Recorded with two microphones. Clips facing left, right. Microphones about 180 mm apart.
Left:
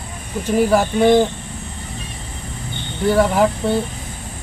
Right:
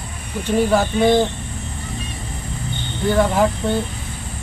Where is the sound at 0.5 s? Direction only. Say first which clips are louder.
Left 1 dB; 10° left (ahead or behind).